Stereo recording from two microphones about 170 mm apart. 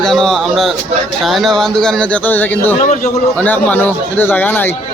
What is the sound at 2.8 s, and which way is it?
Speech, 45° left (ahead or behind).